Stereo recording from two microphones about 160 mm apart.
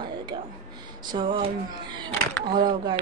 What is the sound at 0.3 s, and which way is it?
A woman's voice, 30° right (ahead or behind).